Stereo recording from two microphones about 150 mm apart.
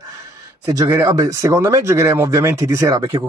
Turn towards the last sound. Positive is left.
turn(degrees=-25)  # may be behind; listen again after turning